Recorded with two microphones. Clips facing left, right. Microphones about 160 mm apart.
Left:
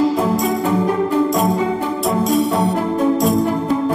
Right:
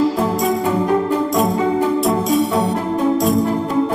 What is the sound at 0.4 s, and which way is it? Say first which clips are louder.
Music: even; centre (ahead or behind).